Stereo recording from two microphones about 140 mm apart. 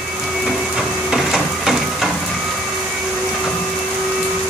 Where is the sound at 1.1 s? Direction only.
Centre (ahead or behind).